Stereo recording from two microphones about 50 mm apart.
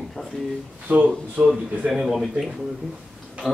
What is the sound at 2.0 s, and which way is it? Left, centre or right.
Speech, centre.